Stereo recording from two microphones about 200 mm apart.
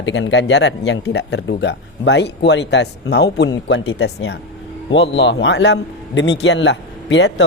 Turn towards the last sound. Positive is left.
turn(degrees=60)  # may be behind; listen again after turning